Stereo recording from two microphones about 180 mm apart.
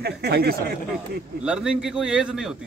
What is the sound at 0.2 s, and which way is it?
Speech, 60° right (ahead or behind).